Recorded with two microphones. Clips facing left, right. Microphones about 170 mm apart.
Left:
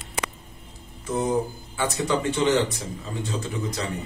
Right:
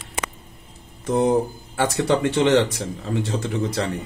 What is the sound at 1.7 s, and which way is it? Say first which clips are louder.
Speech: right 5 dB; 65° right (ahead or behind).